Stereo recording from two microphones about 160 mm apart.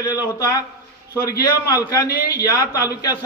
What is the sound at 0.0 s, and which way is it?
Speech, 25° left (ahead or behind).